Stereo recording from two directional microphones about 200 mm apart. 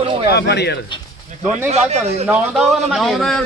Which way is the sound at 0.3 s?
55° left (ahead or behind).